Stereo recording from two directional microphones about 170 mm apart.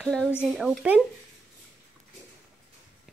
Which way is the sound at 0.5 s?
5° right (ahead or behind).